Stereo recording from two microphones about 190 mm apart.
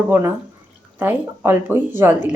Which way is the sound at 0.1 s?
15° right (ahead or behind).